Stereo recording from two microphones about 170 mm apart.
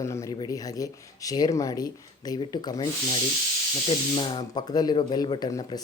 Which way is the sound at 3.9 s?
30° left (ahead or behind).